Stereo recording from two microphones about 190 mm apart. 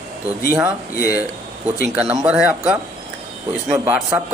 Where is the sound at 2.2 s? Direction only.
10° right (ahead or behind).